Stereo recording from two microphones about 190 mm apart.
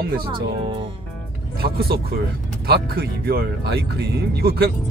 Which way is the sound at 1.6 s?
55° right (ahead or behind).